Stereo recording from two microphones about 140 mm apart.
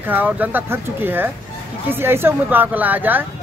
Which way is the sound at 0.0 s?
15° right (ahead or behind).